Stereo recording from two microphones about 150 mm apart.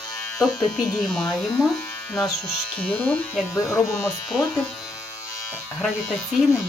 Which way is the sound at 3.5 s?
20° left (ahead or behind).